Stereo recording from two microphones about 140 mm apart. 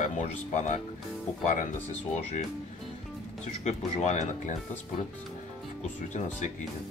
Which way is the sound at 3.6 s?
55° left (ahead or behind).